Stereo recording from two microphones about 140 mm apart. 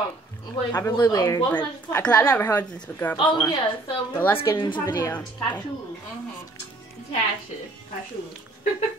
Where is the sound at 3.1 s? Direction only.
35° left (ahead or behind).